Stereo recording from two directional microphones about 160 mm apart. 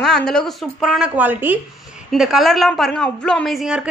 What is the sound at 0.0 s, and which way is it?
Speech, 5° left (ahead or behind).